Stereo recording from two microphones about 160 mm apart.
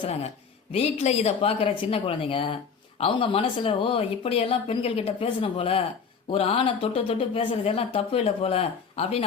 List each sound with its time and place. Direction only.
0.0 s speech: 40° left (ahead or behind)